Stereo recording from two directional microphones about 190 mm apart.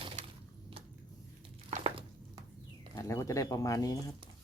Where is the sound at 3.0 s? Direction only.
15° left (ahead or behind).